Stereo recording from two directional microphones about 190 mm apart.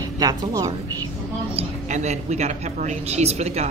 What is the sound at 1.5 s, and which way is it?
A woman's voice, 35° right (ahead or behind).